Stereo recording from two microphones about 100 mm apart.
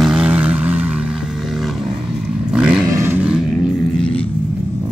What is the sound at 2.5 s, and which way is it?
Vehicle, 10° right (ahead or behind).